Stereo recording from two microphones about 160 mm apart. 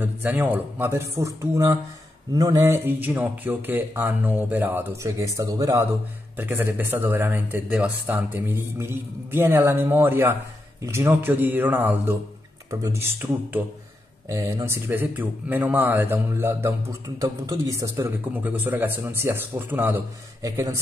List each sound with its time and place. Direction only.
0.0 s speech: 10° right (ahead or behind)